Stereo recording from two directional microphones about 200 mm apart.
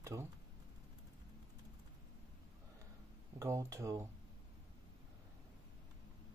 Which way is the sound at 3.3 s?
15° right (ahead or behind).